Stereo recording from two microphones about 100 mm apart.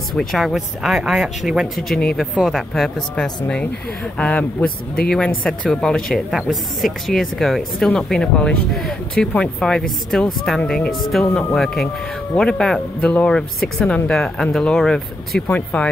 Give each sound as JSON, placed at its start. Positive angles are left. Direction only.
{"t": 0.1, "sound": "speech", "side_deg": 0}